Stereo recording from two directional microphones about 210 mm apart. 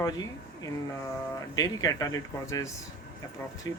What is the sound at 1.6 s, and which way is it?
Speech, 15° left (ahead or behind).